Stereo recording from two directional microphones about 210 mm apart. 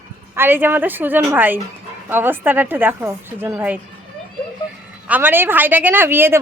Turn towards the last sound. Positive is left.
turn(degrees=-10)  # may be behind; listen again after turning